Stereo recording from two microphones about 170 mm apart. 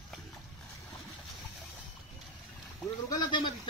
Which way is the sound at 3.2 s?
25° left (ahead or behind).